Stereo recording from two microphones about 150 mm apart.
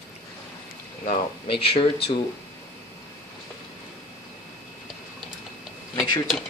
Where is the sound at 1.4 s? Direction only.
35° left (ahead or behind).